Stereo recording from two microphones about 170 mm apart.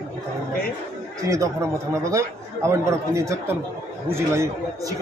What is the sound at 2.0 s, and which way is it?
Speech, 20° right (ahead or behind).